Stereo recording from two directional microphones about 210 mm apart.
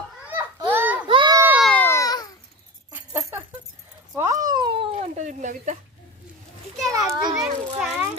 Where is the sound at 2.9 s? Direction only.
10° right (ahead or behind).